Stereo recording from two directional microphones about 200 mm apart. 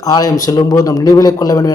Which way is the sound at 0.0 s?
20° left (ahead or behind).